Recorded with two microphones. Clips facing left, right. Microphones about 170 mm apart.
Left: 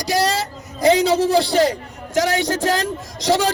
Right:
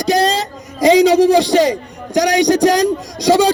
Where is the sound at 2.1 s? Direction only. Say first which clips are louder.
Right 6 dB; 15° right (ahead or behind).